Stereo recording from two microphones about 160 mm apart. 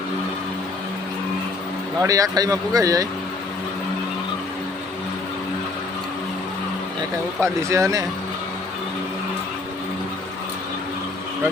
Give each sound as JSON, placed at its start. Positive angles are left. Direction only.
{"t": 2.0, "sound": "speech", "side_deg": -20}
{"t": 7.4, "sound": "speech", "side_deg": -20}